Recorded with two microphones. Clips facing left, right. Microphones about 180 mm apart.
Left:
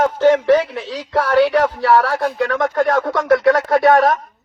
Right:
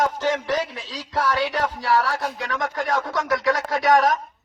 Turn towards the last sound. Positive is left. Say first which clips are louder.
# left 6 dB
turn(degrees=55)  # may be behind; listen again after turning